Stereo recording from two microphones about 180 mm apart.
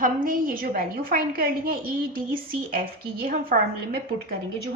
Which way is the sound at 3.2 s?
55° right (ahead or behind).